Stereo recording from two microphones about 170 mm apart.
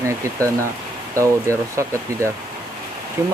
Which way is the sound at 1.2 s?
15° right (ahead or behind).